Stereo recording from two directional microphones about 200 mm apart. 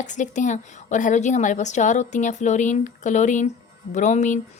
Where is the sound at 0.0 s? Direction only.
40° left (ahead or behind).